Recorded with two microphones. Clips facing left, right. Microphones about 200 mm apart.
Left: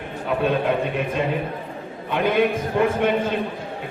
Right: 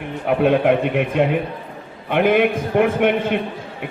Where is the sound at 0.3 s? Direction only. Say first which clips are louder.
Right 6 dB; 65° right (ahead or behind).